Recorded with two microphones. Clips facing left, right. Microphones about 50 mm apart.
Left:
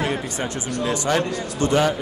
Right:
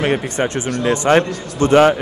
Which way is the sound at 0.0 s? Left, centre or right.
Right.